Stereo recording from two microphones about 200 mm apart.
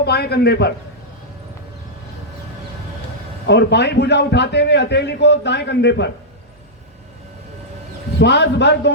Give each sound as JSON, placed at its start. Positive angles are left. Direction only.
{"t": 0.0, "sound": "a man's voice", "side_deg": 55}
{"t": 3.4, "sound": "a man's voice", "side_deg": 55}
{"t": 8.2, "sound": "a man's voice", "side_deg": 60}